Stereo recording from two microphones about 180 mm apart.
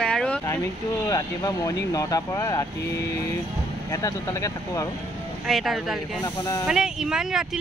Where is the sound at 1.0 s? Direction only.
20° left (ahead or behind).